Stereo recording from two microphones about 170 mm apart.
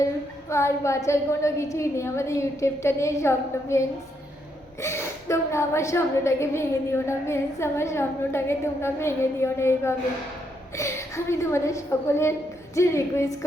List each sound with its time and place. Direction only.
0.5 s a woman's voice: 15° left (ahead or behind)